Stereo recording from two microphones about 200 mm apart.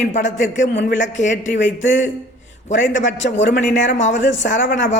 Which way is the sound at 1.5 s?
70° left (ahead or behind).